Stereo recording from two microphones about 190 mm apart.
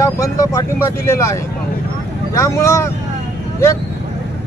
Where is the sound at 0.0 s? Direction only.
15° left (ahead or behind).